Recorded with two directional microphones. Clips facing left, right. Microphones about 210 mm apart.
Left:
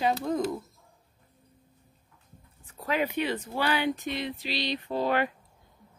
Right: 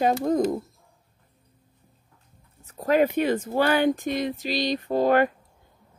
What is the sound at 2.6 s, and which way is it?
Speech, 45° right (ahead or behind).